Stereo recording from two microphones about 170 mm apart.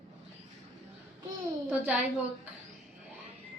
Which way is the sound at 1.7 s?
10° right (ahead or behind).